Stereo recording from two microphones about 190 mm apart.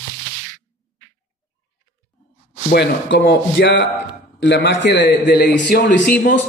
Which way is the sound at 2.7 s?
65° left (ahead or behind).